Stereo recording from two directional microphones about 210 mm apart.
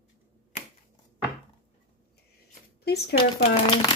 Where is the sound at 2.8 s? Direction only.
50° left (ahead or behind).